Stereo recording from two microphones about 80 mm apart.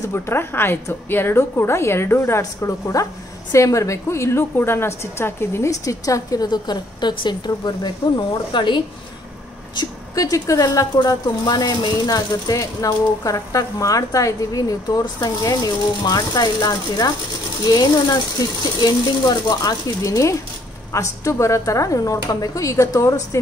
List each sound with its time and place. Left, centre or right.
0.0 s a woman's voice: left
2.9 s a woman's voice: left
8.5 s speech: left
10.1 s speech: left
11.4 s speech: left
12.3 s a woman's voice: left